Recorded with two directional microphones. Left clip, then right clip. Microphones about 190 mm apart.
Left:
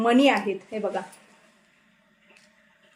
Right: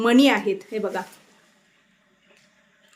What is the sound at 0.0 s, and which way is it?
A woman's voice, 25° right (ahead or behind).